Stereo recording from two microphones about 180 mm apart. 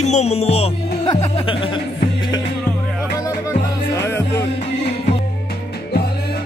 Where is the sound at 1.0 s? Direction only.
25° left (ahead or behind).